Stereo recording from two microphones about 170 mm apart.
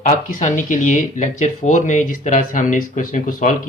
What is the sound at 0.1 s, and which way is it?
Speech, 45° left (ahead or behind).